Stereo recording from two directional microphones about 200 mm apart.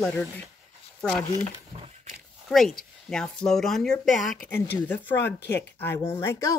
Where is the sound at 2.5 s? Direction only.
Centre (ahead or behind).